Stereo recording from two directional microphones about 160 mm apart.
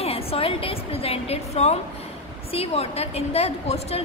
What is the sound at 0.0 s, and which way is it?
A woman's voice, 40° left (ahead or behind).